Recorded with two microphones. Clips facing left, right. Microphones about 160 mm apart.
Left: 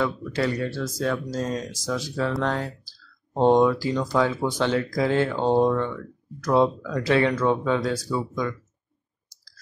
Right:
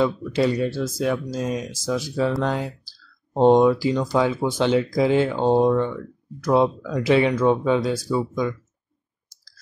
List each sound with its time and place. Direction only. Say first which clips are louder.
0.0 s speech: right 4 dB; 20° right (ahead or behind)